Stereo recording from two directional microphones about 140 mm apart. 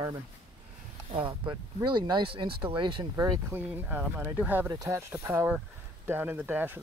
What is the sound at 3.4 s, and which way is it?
Speech, 15° right (ahead or behind).